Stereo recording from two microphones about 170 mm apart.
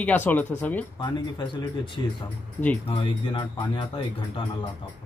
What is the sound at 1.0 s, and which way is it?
Speech, 30° left (ahead or behind).